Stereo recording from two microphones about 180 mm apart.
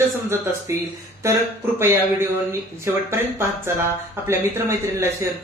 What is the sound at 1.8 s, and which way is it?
Speech, 15° right (ahead or behind).